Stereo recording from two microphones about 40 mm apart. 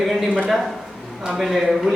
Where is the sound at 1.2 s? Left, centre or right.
Centre.